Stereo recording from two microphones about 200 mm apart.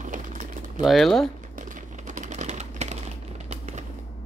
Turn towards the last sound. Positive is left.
turn(degrees=-35)  # may be behind; listen again after turning